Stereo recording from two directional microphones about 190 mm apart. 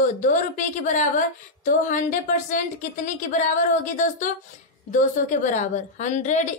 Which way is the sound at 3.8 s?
45° left (ahead or behind).